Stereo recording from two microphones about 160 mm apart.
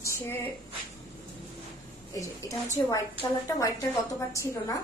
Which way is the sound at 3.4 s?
20° left (ahead or behind).